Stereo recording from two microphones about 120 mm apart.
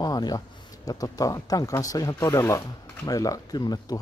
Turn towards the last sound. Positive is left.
turn(degrees=35)  # may be behind; listen again after turning